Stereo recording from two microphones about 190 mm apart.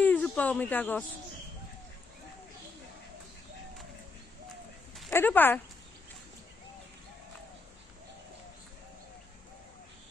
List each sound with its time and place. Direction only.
0.0 s speech: 10° left (ahead or behind)
5.1 s speech: 10° left (ahead or behind)